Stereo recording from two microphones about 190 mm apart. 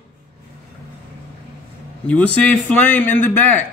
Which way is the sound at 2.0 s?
5° left (ahead or behind).